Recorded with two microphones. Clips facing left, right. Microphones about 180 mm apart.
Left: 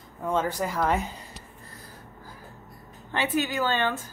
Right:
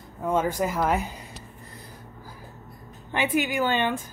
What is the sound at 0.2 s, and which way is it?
Speech, 15° right (ahead or behind).